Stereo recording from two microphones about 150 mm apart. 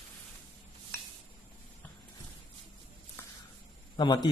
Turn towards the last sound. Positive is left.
turn(degrees=30)  # may be behind; listen again after turning